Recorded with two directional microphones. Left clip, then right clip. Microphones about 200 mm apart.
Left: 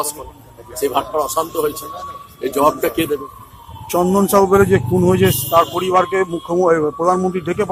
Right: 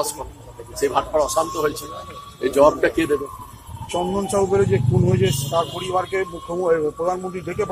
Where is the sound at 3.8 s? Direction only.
45° left (ahead or behind).